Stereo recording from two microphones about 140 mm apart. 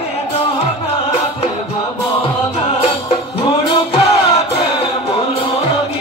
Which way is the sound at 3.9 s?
45° left (ahead or behind).